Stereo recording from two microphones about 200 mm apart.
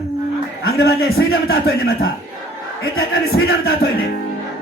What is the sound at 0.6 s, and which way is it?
Speech, 50° left (ahead or behind).